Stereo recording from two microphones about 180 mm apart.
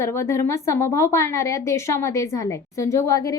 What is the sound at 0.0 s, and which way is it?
A woman's voice, 15° left (ahead or behind).